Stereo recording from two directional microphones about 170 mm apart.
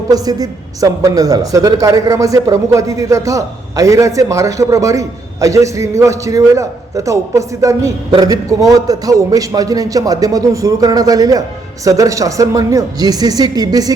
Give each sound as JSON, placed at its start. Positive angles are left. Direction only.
{"t": 0.1, "sound": "a woman's voice", "side_deg": -20}